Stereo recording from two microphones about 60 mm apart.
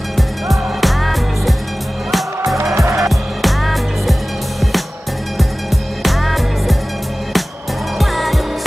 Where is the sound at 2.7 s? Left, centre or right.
Right.